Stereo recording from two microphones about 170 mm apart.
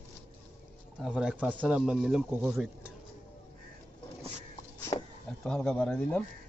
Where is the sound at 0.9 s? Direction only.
5° right (ahead or behind).